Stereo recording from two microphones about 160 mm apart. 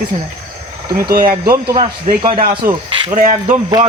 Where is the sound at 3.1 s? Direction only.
50° right (ahead or behind).